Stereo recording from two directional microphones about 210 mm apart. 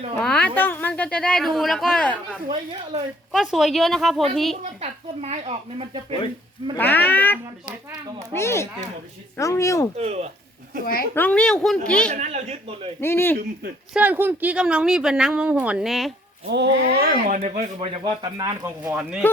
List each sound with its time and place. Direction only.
0.2 s speech: 5° left (ahead or behind)
4.6 s speech: 30° right (ahead or behind)
6.7 s speech: 10° left (ahead or behind)
10.0 s speech: 30° right (ahead or behind)
11.1 s speech: 10° left (ahead or behind)
12.1 s speech: 35° right (ahead or behind)
13.0 s speech: 10° left (ahead or behind)
13.9 s speech: 10° right (ahead or behind)
16.5 s speech: 55° right (ahead or behind)
16.8 s speech: 40° right (ahead or behind)
18.0 s speech: 20° right (ahead or behind)
18.9 s speech: 5° right (ahead or behind)